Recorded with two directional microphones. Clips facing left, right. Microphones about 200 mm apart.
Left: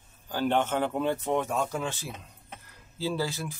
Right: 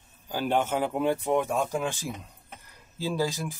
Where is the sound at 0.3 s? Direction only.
10° right (ahead or behind).